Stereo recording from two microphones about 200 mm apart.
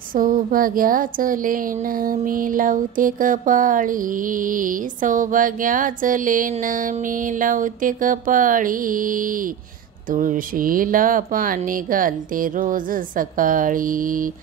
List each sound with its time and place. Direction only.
0.1 s speech: 45° right (ahead or behind)